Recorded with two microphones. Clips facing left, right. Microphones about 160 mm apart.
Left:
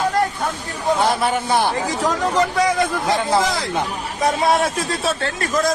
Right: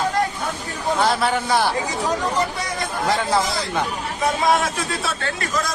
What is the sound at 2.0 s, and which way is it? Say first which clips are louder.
Speech: left 4 dB; 90° left.